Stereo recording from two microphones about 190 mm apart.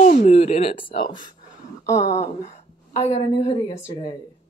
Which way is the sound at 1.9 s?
15° left (ahead or behind).